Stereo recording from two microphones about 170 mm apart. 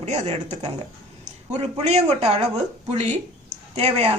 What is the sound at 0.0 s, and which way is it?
A man's voice, 40° right (ahead or behind).